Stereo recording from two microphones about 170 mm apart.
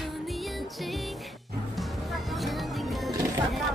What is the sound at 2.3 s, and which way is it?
Music, centre (ahead or behind).